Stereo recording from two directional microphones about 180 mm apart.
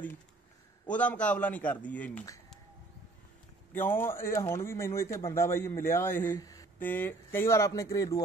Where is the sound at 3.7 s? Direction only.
10° left (ahead or behind).